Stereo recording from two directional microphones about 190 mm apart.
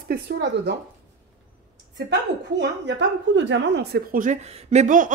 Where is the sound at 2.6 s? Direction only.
65° right (ahead or behind).